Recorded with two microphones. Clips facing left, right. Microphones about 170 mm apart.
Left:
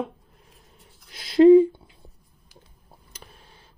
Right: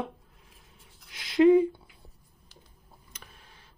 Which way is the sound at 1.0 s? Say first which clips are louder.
Left 6 dB; 35° left (ahead or behind).